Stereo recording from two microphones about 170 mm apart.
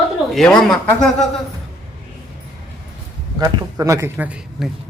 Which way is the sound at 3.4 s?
20° right (ahead or behind).